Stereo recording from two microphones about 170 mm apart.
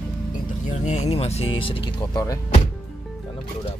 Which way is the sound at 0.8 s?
45° left (ahead or behind).